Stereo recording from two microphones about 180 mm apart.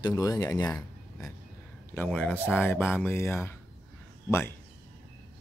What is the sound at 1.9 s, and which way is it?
Speech, 10° left (ahead or behind).